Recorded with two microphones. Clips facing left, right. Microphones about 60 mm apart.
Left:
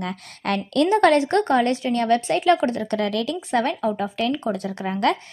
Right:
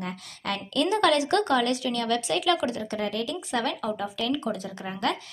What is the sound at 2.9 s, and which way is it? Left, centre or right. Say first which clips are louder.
A woman's voice: left 6 dB; left.